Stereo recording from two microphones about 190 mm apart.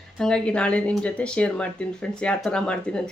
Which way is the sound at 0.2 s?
5° left (ahead or behind).